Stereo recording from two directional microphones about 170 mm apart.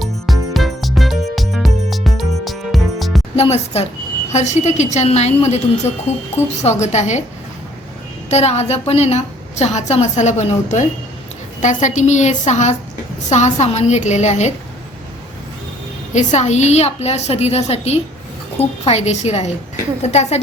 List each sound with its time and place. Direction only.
0.0 s music: centre (ahead or behind)
3.3 s a woman's voice: 40° left (ahead or behind)
8.3 s a woman's voice: 40° left (ahead or behind)
16.1 s a woman's voice: 45° left (ahead or behind)